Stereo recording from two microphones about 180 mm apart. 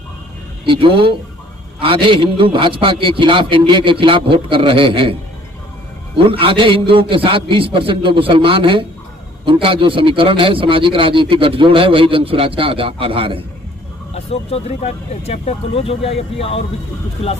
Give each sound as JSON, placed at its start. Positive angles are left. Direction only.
{"t": 0.6, "sound": "a man's voice", "side_deg": -30}
{"t": 6.1, "sound": "a man's voice", "side_deg": -30}
{"t": 14.1, "sound": "speech", "side_deg": 35}